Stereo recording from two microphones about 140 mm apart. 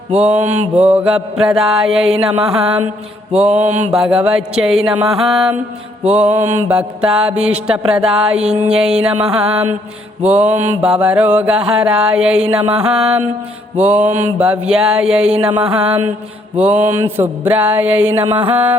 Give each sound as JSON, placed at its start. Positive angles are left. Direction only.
{"t": 0.2, "sound": "mantra", "side_deg": -10}
{"t": 3.3, "sound": "mantra", "side_deg": -50}
{"t": 3.9, "sound": "a sound", "side_deg": -5}
{"t": 6.7, "sound": "mantra", "side_deg": -10}
{"t": 8.7, "sound": "a sound", "side_deg": -5}
{"t": 9.2, "sound": "mantra", "side_deg": -10}